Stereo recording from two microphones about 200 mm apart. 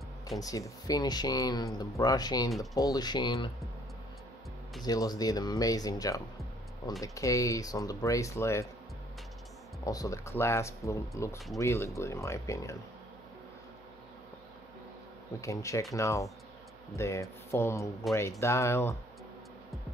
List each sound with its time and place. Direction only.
0.4 s speech: 15° left (ahead or behind)
4.8 s speech: 20° left (ahead or behind)
9.8 s speech: 15° left (ahead or behind)
15.4 s speech: 15° left (ahead or behind)
18.0 s speech: centre (ahead or behind)
18.4 s speech: 15° left (ahead or behind)